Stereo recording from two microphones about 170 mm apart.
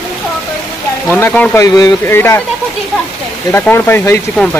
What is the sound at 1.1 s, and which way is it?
Speech, 10° left (ahead or behind).